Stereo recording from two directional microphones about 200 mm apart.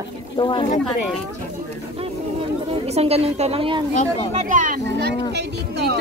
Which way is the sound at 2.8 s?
30° right (ahead or behind).